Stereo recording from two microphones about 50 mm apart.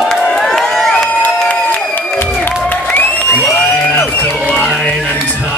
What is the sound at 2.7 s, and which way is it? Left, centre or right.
Crowd, left.